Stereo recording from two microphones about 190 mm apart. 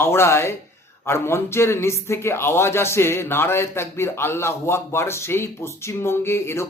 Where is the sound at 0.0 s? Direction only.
15° left (ahead or behind).